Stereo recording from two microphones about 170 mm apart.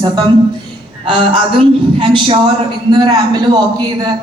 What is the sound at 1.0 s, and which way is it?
A man's voice, 30° right (ahead or behind).